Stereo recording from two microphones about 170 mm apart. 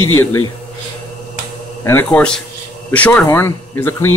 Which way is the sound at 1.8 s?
10° left (ahead or behind).